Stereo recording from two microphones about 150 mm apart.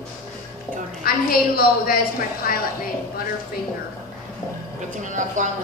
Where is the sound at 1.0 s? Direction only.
80° left.